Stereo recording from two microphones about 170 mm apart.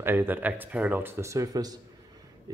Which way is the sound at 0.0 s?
15° right (ahead or behind).